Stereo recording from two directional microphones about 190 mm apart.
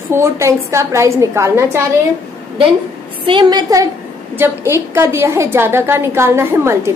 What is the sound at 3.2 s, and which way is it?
A woman's voice, 25° right (ahead or behind).